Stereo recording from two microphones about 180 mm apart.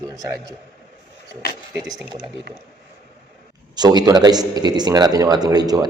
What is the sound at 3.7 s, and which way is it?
A man's voice, 20° right (ahead or behind).